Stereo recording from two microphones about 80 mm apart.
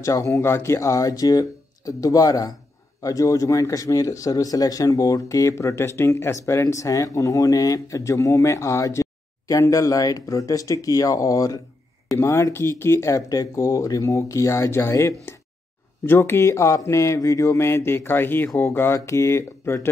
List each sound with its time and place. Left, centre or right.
0.0 s speech: left